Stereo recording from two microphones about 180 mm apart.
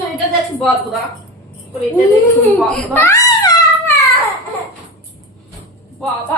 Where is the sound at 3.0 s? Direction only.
15° left (ahead or behind).